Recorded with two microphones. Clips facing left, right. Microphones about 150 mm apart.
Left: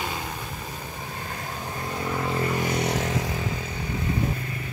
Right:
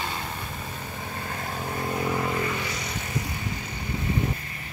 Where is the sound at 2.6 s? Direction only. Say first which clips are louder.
Left 8 dB; 65° left (ahead or behind); by 3.1 s 80° left.